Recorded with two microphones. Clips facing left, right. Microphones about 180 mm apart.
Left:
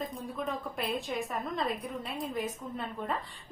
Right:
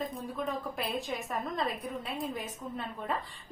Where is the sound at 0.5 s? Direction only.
Centre (ahead or behind).